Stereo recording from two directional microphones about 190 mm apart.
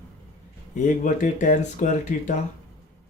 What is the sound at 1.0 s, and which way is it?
Speech, 40° left (ahead or behind).